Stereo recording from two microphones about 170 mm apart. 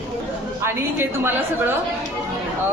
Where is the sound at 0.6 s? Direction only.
15° right (ahead or behind).